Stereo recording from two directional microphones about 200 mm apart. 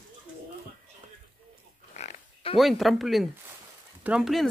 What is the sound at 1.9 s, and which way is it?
Pig, 35° left (ahead or behind).